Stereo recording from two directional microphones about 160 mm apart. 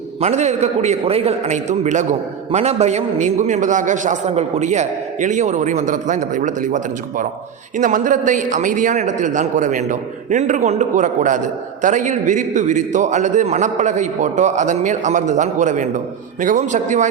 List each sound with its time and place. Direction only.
0.2 s a man's voice: 45° right (ahead or behind)